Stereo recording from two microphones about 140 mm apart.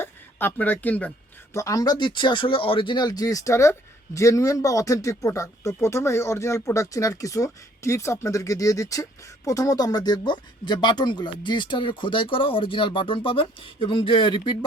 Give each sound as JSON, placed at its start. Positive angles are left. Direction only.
{"t": 0.0, "sound": "speech", "side_deg": 15}
{"t": 1.5, "sound": "speech", "side_deg": 25}